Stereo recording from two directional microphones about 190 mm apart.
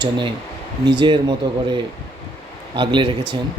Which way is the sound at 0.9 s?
25° right (ahead or behind).